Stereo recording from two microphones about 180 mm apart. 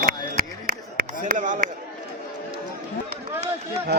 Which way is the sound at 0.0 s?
55° right (ahead or behind).